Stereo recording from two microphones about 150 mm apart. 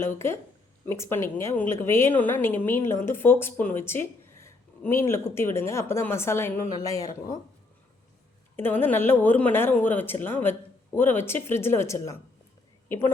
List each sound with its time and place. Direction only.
0.0 s speech: 15° left (ahead or behind)
8.5 s speech: 15° left (ahead or behind)